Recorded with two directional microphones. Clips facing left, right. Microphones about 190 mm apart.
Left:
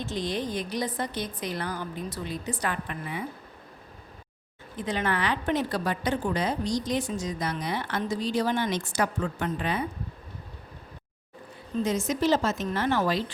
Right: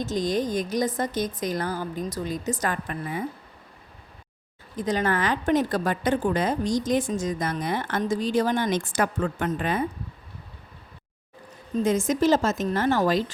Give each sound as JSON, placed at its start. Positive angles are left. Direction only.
{"t": 0.0, "sound": "a woman's voice", "side_deg": -45}
{"t": 4.8, "sound": "a woman's voice", "side_deg": -40}
{"t": 11.8, "sound": "a woman's voice", "side_deg": -50}